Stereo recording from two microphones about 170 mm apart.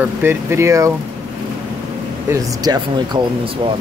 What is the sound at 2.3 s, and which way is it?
Speech, 20° right (ahead or behind).